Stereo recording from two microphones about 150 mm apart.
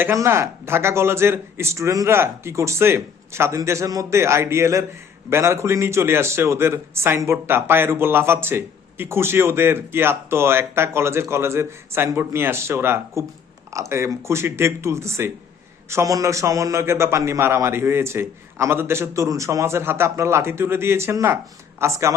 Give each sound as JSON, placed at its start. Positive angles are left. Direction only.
{"t": 0.0, "sound": "speech", "side_deg": -15}